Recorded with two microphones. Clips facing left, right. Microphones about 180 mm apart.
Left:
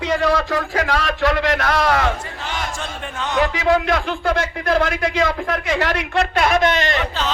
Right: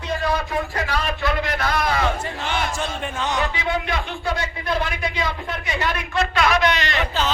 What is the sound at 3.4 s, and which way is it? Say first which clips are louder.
A man's voice: left 7 dB; 90° left.